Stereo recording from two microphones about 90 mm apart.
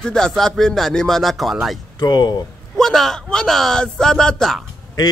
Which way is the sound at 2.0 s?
50° left (ahead or behind).